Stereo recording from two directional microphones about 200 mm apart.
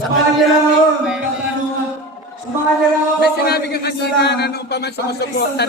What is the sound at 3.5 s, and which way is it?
Speech, 55° left (ahead or behind).